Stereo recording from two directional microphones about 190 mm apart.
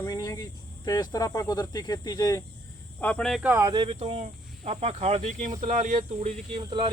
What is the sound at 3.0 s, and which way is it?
Speech, 5° left (ahead or behind).